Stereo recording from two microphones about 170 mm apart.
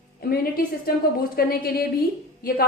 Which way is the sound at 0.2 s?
60° left (ahead or behind).